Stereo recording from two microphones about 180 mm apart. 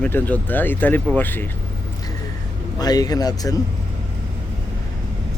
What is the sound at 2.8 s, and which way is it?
Speech, 20° left (ahead or behind).